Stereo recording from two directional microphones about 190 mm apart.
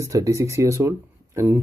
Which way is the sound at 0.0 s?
15° right (ahead or behind).